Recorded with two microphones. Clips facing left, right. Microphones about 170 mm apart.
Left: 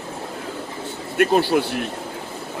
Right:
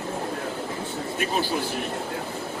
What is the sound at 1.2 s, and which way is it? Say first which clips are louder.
Speech: left 10 dB; 70° left (ahead or behind).